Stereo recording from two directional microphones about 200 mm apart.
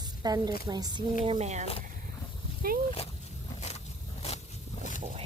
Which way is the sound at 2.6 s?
50° right (ahead or behind).